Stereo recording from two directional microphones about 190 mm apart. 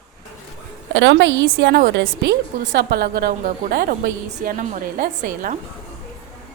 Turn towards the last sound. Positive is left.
turn(degrees=-50)  # may be behind; listen again after turning